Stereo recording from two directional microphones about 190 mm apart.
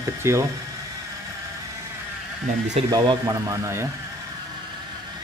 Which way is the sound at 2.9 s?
15° right (ahead or behind).